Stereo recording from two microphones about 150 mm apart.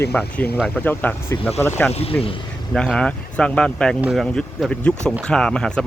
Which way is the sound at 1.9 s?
45° left (ahead or behind).